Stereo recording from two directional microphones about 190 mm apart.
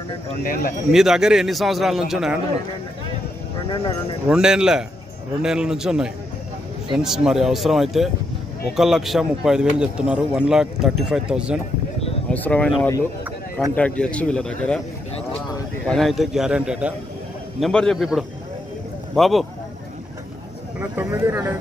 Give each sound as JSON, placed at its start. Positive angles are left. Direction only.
{"t": 0.4, "sound": "speech", "side_deg": 50}
{"t": 0.9, "sound": "speech", "side_deg": 0}
{"t": 4.3, "sound": "speech", "side_deg": -5}
{"t": 12.3, "sound": "speech", "side_deg": 5}
{"t": 15.9, "sound": "speech", "side_deg": 0}
{"t": 20.8, "sound": "speech", "side_deg": -10}